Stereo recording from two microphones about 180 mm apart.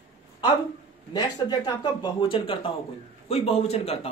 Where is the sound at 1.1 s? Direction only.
20° left (ahead or behind).